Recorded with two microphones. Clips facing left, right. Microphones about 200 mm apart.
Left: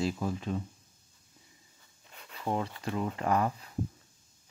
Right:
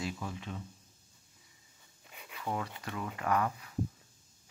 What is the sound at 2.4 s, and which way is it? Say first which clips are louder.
Speech: left 5 dB; 30° left (ahead or behind).